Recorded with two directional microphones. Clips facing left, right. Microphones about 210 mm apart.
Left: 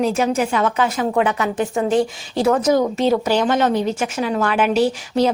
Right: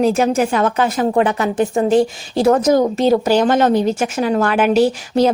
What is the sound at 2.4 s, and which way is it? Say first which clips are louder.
Speech: right 3 dB; 45° right (ahead or behind).